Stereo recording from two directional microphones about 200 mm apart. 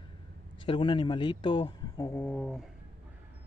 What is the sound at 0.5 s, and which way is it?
Speech, 25° left (ahead or behind).